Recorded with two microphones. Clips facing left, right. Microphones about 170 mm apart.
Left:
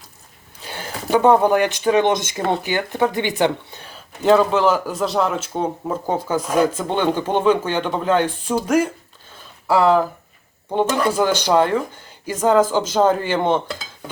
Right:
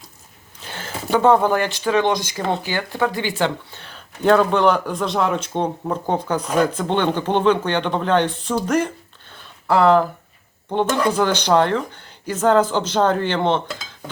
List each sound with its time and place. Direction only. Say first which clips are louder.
1.1 s speech: left 1 dB; 15° left (ahead or behind)
4.2 s speech: even; centre (ahead or behind)